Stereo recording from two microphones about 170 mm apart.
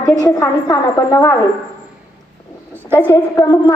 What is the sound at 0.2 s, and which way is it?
A woman's voice, 20° left (ahead or behind).